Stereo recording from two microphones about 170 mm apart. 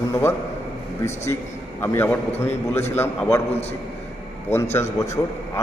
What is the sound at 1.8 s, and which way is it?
Speech, 15° left (ahead or behind).